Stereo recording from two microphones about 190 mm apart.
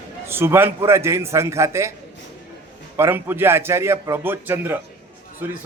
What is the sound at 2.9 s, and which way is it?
A man's voice, 10° right (ahead or behind).